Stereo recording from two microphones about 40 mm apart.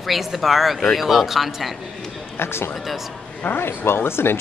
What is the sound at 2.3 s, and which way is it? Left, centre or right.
Speech, left.